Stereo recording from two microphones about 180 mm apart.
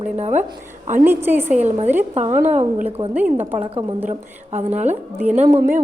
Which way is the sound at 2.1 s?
40° right (ahead or behind).